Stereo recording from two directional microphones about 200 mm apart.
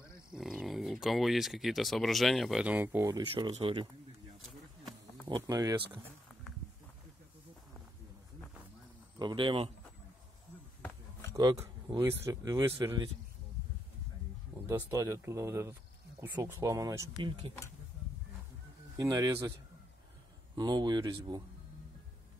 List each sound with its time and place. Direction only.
0.3 s speech: centre (ahead or behind); by 3.8 s 25° right (ahead or behind)
4.4 s a sound: centre (ahead or behind)
5.3 s speech: 15° right (ahead or behind)
9.2 s speech: 25° right (ahead or behind)
11.3 s speech: 15° right (ahead or behind)
14.7 s speech: 15° right (ahead or behind)
18.9 s speech: 20° right (ahead or behind)
20.5 s speech: 20° right (ahead or behind)